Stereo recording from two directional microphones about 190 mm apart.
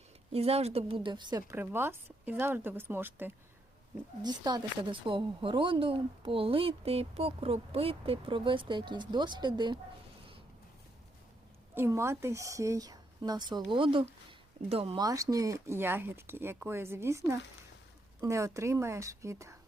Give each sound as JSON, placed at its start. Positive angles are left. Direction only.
{"t": 0.3, "sound": "a woman's voice", "side_deg": -30}
{"t": 4.2, "sound": "a woman's voice", "side_deg": -20}
{"t": 11.7, "sound": "a woman's voice", "side_deg": -15}
{"t": 15.0, "sound": "a woman's voice", "side_deg": -20}